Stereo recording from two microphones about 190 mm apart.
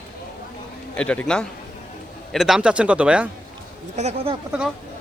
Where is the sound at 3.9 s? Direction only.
35° right (ahead or behind).